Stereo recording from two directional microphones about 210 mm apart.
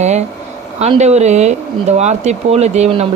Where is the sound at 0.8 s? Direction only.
30° right (ahead or behind).